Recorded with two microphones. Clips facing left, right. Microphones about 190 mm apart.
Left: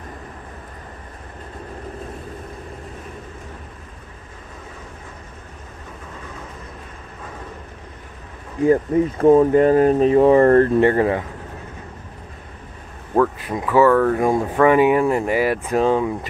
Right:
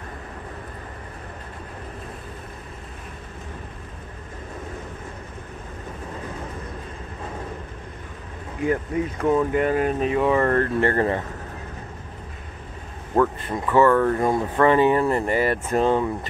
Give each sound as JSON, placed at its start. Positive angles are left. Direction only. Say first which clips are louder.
{"t": 8.6, "sound": "speech", "louder": "left 7 dB", "side_deg": 30}
{"t": 10.8, "sound": "speech", "louder": "left 5 dB", "side_deg": 15}
{"t": 13.1, "sound": "speech", "louder": "left 2 dB", "side_deg": 5}